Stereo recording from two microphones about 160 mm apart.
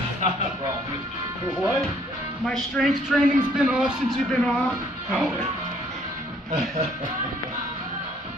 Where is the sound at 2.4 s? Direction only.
Centre (ahead or behind).